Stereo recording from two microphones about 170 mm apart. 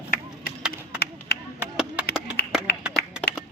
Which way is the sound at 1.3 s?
70° left (ahead or behind).